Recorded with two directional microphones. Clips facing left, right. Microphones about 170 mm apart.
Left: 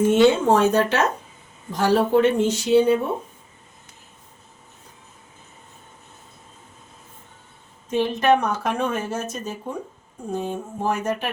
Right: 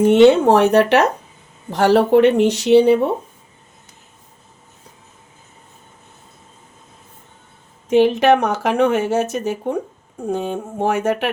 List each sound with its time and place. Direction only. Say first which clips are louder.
0.3 s speech: right 5 dB; 65° right (ahead or behind)
7.9 s speech: right 6 dB; 80° right